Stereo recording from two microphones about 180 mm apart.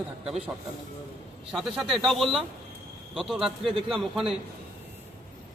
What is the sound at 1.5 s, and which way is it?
A man's voice, centre (ahead or behind).